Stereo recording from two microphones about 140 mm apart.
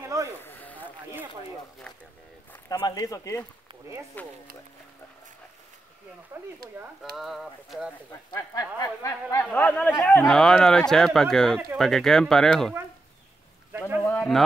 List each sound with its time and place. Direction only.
0.0 s a sound: 25° right (ahead or behind)
0.4 s a sound: 15° left (ahead or behind)
2.7 s speech: 25° left (ahead or behind); by 4.3 s 10° left (ahead or behind)
7.0 s speech: centre (ahead or behind)
8.3 s speech: 25° left (ahead or behind); by 12.7 s 5° left (ahead or behind)
13.7 s speech: 15° right (ahead or behind)
14.0 s speech: 10° left (ahead or behind)